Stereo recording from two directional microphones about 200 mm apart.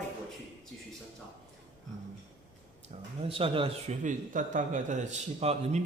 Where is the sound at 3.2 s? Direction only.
25° right (ahead or behind).